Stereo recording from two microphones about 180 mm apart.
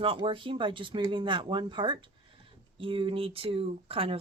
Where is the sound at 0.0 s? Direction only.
30° right (ahead or behind).